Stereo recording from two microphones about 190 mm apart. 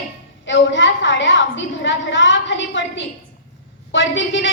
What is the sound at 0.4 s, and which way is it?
A woman's voice, 75° left (ahead or behind).